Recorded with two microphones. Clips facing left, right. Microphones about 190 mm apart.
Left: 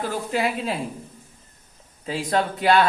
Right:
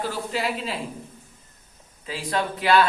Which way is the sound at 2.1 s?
45° left (ahead or behind).